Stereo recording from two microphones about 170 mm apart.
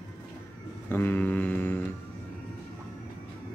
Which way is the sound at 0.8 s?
10° left (ahead or behind).